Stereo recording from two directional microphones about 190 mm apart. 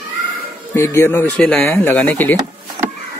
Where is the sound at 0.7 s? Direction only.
15° left (ahead or behind).